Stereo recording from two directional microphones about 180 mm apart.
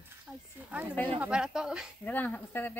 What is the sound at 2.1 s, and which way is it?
Speech, 10° left (ahead or behind).